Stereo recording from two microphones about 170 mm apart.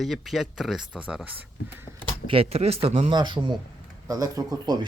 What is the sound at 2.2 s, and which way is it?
Speech, 35° right (ahead or behind).